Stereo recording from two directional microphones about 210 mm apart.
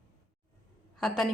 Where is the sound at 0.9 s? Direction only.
Centre (ahead or behind).